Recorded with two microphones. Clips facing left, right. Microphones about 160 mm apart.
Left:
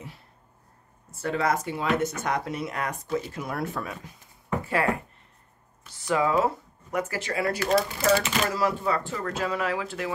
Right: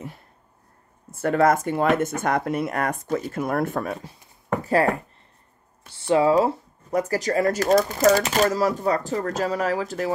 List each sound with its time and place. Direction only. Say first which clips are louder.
1.1 s speech: right 7 dB; 50° right (ahead or behind)
3.9 s speech: right 8 dB; 35° right (ahead or behind)
5.9 s speech: right 6 dB; 30° right (ahead or behind)